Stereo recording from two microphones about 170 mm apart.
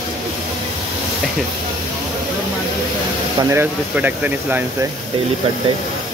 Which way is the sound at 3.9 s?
10° right (ahead or behind).